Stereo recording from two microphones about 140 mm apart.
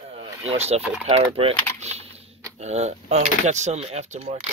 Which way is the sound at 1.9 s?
50° right (ahead or behind).